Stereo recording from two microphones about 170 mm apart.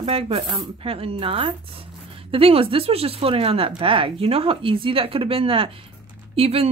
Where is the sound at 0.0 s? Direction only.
35° right (ahead or behind).